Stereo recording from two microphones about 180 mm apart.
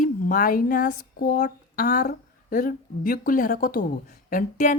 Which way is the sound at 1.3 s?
60° left (ahead or behind).